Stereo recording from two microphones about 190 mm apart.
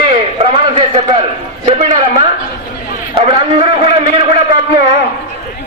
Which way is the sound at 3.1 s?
30° right (ahead or behind).